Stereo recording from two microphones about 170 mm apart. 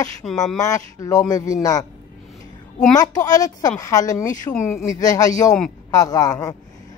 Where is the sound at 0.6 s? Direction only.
20° left (ahead or behind).